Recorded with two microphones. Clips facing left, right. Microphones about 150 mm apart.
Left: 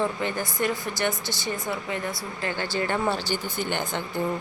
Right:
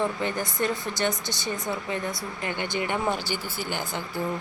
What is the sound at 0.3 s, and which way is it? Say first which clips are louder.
A woman's voice: even; 20° right (ahead or behind).